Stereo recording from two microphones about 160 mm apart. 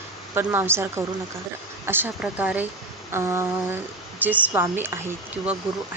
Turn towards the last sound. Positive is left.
turn(degrees=-10)  # may be behind; listen again after turning